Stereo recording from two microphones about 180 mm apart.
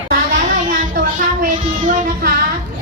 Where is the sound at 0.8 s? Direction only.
45° right (ahead or behind).